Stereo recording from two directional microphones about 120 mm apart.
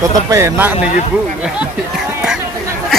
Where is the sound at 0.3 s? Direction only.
20° right (ahead or behind).